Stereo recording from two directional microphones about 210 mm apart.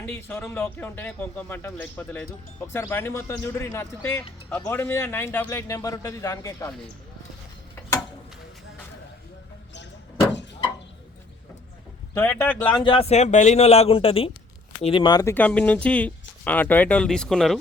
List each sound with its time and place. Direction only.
0.1 s speech: 10° left (ahead or behind)
7.8 s tick-tock: 10° left (ahead or behind)
12.1 s speech: 10° left (ahead or behind)
12.7 s speech: 25° left (ahead or behind); by 17.6 s centre (ahead or behind)